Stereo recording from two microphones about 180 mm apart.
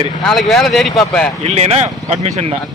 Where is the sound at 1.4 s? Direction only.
35° right (ahead or behind).